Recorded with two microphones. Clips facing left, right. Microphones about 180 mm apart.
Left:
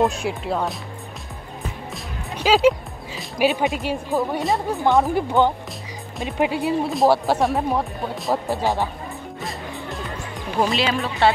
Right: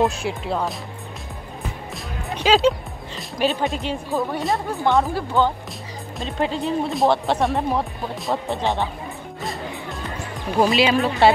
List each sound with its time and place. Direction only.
0.0 s speech: centre (ahead or behind)
2.2 s music: 5° left (ahead or behind)
3.6 s speech: 5° left (ahead or behind)
4.4 s speech: centre (ahead or behind)
5.0 s speech: 15° left (ahead or behind)
6.9 s speech: centre (ahead or behind)
9.4 s music: centre (ahead or behind)
10.6 s speech: 10° right (ahead or behind)